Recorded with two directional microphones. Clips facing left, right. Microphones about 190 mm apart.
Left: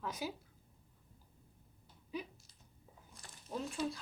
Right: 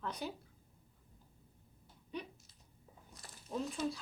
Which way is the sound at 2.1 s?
5° left (ahead or behind).